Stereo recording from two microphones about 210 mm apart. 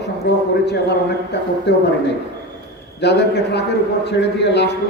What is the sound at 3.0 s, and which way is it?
A man's voice, 55° left (ahead or behind).